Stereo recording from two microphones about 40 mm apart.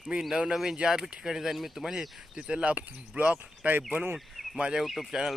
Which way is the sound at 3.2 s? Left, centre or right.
Right.